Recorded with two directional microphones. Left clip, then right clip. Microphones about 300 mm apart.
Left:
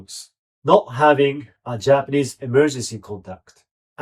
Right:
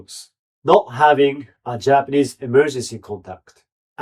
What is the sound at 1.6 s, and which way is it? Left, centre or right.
Speech, centre.